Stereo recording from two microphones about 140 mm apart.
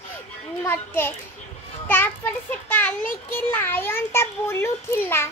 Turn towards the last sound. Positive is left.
turn(degrees=15)  # may be behind; listen again after turning